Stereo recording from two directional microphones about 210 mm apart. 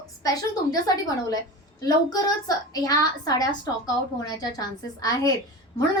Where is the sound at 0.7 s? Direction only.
15° left (ahead or behind).